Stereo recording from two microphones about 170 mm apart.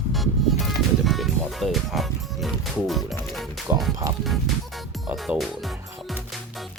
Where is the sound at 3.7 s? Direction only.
15° right (ahead or behind).